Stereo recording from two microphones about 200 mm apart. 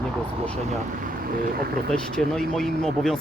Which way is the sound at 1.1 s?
45° right (ahead or behind).